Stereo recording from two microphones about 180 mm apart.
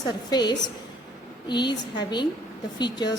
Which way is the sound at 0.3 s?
20° left (ahead or behind).